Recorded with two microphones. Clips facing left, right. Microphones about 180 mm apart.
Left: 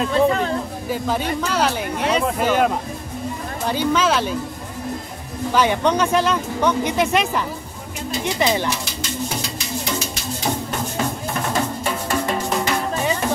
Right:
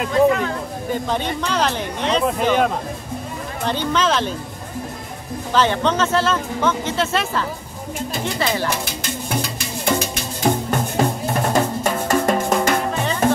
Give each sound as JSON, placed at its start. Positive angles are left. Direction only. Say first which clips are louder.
{"t": 0.1, "sound": "speech", "louder": "right 4 dB", "side_deg": 30}
{"t": 0.8, "sound": "speech", "louder": "right 1 dB", "side_deg": 5}
{"t": 5.5, "sound": "speech", "louder": "even", "side_deg": 10}
{"t": 8.6, "sound": "music", "louder": "right 1 dB", "side_deg": -55}
{"t": 11.0, "sound": "drum", "louder": "right 5 dB", "side_deg": -40}
{"t": 11.8, "sound": "music", "louder": "right 4 dB", "side_deg": -45}